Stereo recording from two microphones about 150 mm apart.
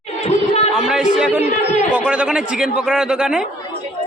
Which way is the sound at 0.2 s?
45° left (ahead or behind).